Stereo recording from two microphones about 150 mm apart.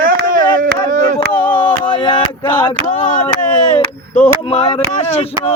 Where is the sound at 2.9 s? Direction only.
60° left (ahead or behind).